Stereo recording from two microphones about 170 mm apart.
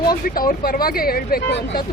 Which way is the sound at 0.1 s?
60° left (ahead or behind).